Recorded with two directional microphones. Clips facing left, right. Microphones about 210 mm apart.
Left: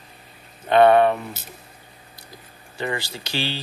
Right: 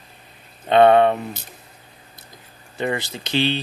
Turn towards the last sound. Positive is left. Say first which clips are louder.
# right 7 dB
turn(degrees=-20)  # may be behind; listen again after turning